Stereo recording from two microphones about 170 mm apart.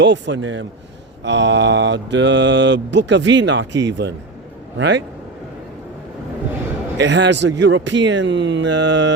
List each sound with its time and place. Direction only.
0.0 s mantra: 90° right
7.0 s mantra: 90° right